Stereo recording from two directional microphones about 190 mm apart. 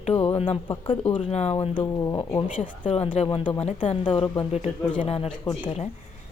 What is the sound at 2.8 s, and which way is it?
A woman's voice, 30° left (ahead or behind).